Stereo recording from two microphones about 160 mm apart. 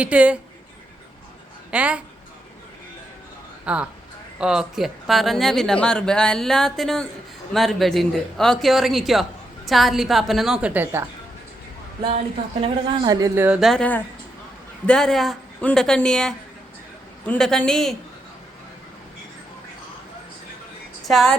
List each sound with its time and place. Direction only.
0.0 s speech: 10° right (ahead or behind)
1.7 s speech: 10° right (ahead or behind)
3.7 s speech: 5° right (ahead or behind)
13.1 s speech: 20° right (ahead or behind)
13.6 s speech: centre (ahead or behind)
21.1 s speech: centre (ahead or behind)